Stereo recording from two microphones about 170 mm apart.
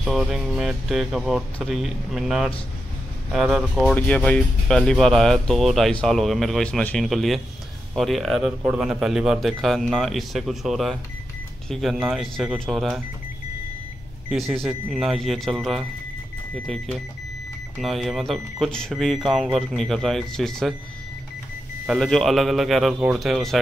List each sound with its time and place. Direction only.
0.0 s speech: centre (ahead or behind)
14.3 s speech: centre (ahead or behind)
21.8 s speech: centre (ahead or behind)